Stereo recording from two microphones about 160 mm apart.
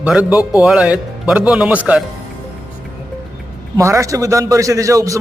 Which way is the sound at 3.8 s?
20° right (ahead or behind).